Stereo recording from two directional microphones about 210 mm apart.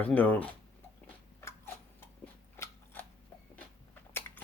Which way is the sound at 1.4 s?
10° left (ahead or behind).